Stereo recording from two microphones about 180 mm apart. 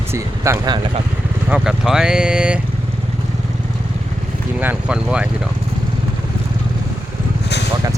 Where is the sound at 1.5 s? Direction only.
5° right (ahead or behind).